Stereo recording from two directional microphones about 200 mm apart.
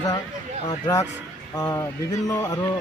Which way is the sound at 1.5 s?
15° left (ahead or behind).